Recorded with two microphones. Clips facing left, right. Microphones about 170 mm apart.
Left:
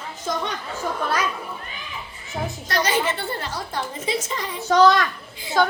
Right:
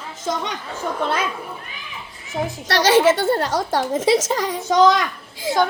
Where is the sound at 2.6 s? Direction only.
85° right.